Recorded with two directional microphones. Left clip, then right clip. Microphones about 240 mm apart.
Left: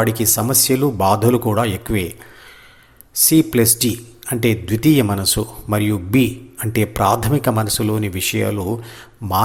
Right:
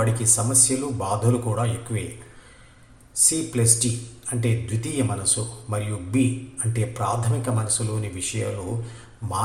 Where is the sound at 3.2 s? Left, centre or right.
Left.